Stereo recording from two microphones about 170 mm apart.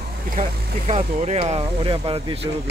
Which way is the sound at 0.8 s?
40° right (ahead or behind).